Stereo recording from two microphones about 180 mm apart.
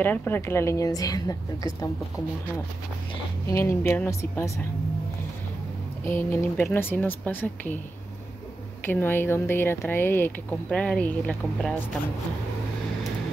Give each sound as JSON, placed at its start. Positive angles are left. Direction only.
{"t": 0.0, "sound": "speech", "side_deg": 10}
{"t": 3.4, "sound": "speech", "side_deg": 15}
{"t": 6.0, "sound": "speech", "side_deg": 15}
{"t": 8.8, "sound": "speech", "side_deg": 10}